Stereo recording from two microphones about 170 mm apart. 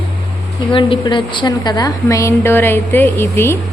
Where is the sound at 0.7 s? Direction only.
30° left (ahead or behind); by 3.6 s 15° left (ahead or behind).